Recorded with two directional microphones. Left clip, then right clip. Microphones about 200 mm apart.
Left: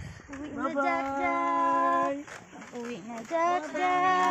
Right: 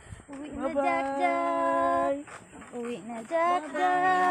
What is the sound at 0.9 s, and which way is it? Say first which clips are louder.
Child singing: right 2 dB; 15° right (ahead or behind).